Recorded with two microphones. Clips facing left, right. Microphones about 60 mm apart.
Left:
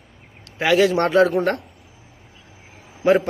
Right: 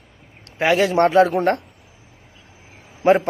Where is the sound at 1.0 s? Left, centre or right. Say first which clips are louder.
Right 2 dB; centre.